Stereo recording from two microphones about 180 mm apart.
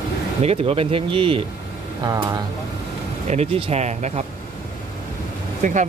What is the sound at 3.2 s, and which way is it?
Speech, 35° right (ahead or behind).